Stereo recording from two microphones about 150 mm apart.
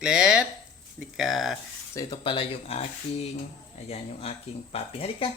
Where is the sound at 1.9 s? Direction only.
30° left (ahead or behind).